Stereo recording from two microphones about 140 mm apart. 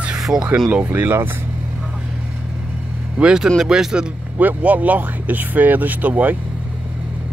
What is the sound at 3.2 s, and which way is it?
Speech, 5° right (ahead or behind).